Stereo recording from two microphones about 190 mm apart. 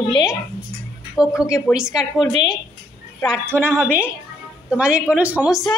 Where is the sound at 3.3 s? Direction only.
10° right (ahead or behind).